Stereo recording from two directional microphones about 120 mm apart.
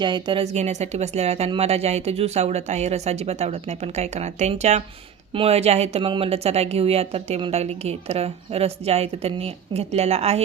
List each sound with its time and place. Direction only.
0.0 s a woman's voice: 40° right (ahead or behind)
0.5 s a woman's voice: 70° right (ahead or behind)
5.3 s a woman's voice: 55° right (ahead or behind)
6.0 s a woman's voice: 45° right (ahead or behind)